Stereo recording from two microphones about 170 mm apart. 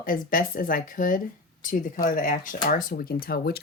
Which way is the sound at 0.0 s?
55° left (ahead or behind).